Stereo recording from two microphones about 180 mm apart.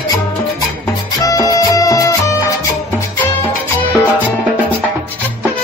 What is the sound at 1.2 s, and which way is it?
Music, 20° left (ahead or behind).